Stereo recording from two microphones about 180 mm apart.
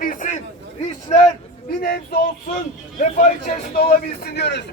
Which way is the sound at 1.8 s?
60° left (ahead or behind).